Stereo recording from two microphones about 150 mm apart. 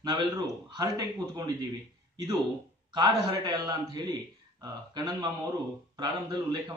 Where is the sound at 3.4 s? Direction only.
25° right (ahead or behind).